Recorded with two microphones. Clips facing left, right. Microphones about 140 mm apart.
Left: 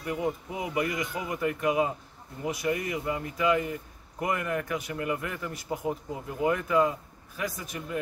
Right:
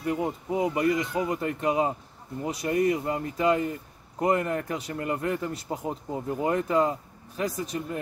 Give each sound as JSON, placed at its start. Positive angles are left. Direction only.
{"t": 0.0, "sound": "a man's voice", "side_deg": -35}